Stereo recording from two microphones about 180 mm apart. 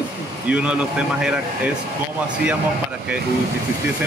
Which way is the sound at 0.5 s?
5° right (ahead or behind).